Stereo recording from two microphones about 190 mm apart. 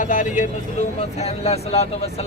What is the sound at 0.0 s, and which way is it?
Speech, 40° left (ahead or behind).